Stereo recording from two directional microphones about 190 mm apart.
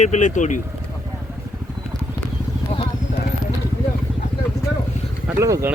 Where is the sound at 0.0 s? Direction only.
40° left (ahead or behind).